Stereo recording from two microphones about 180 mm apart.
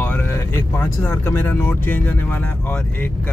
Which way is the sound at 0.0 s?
10° left (ahead or behind).